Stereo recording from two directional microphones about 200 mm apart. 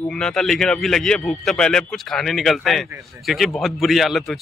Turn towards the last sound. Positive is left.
turn(degrees=0)  # may be behind; listen again after turning